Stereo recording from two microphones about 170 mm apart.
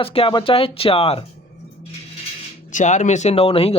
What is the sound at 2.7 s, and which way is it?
Speech, 45° left (ahead or behind).